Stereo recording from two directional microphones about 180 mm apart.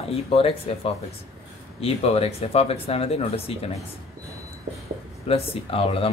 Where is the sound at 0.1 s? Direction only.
35° left (ahead or behind).